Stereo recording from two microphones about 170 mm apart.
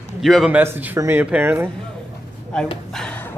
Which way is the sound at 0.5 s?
10° right (ahead or behind).